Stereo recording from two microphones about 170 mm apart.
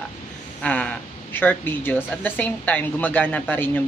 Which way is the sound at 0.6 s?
5° left (ahead or behind).